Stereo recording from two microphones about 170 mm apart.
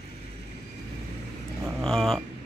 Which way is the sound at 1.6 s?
5° left (ahead or behind).